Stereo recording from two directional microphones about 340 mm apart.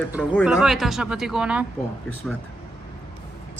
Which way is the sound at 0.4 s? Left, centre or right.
Centre.